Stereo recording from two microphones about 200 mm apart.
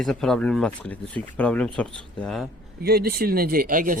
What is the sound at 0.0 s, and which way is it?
Speech, centre (ahead or behind).